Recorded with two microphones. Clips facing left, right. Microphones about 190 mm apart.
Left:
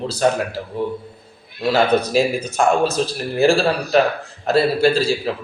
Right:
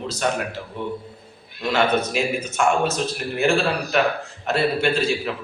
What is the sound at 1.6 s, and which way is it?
Speech, 35° left (ahead or behind).